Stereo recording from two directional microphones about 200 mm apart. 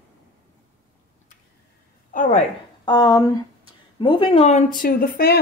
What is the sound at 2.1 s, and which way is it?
Speech, 40° left (ahead or behind).